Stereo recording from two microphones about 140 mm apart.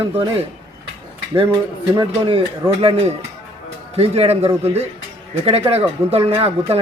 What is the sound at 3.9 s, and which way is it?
A man's voice, 45° right (ahead or behind).